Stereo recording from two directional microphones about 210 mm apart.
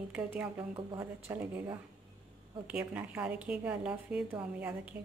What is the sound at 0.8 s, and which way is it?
Speech, 20° right (ahead or behind).